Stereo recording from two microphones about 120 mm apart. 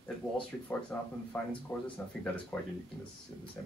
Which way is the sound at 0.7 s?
10° left (ahead or behind).